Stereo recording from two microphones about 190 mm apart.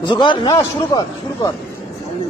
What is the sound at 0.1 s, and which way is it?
A man's voice, 25° left (ahead or behind).